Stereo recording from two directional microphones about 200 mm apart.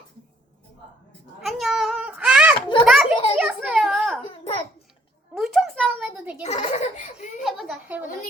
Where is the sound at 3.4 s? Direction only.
5° right (ahead or behind).